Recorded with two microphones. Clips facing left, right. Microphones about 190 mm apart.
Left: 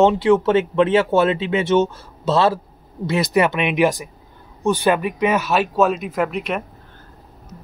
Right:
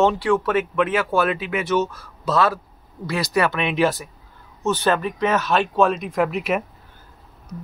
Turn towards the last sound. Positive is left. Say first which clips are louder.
# right 1 dB
turn(degrees=0)  # may be behind; listen again after turning